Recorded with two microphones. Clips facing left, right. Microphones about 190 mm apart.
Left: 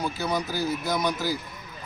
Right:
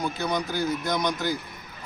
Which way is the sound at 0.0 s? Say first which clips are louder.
Even; 5° left (ahead or behind).